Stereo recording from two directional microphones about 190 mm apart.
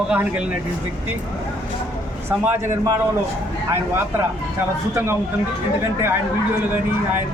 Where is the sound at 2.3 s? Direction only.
10° right (ahead or behind).